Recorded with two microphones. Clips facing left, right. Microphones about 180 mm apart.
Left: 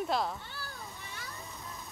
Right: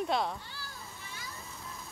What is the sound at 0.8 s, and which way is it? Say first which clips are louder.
Water: left 2 dB; centre (ahead or behind).